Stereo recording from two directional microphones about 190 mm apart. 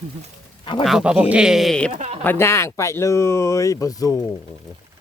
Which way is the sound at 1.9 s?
35° right (ahead or behind).